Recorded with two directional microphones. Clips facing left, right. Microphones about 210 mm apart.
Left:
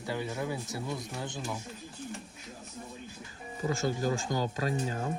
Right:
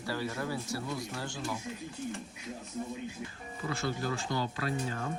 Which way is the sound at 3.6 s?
40° left (ahead or behind).